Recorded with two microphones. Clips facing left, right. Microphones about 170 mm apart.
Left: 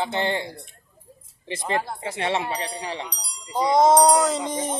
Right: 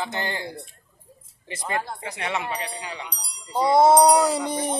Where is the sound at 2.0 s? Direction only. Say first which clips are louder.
Left 4 dB; 25° left (ahead or behind).